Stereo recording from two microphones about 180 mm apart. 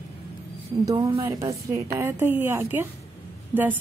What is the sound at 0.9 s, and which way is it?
Speech, 25° right (ahead or behind).